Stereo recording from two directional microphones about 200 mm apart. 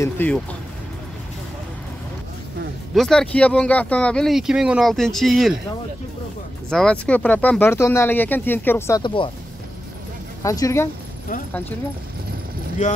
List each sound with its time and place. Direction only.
0.0 s speech: 10° left (ahead or behind)
2.9 s speech: centre (ahead or behind)
6.7 s speech: 5° left (ahead or behind)
9.0 s speech: 25° left (ahead or behind)
10.4 s speech: 15° left (ahead or behind)
12.8 s speech: 40° left (ahead or behind)